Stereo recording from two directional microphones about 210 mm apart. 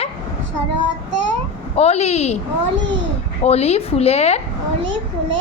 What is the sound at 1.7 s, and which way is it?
Speech, 30° left (ahead or behind).